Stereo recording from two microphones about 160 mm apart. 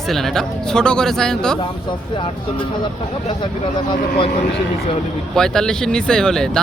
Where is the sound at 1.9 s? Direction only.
30° left (ahead or behind).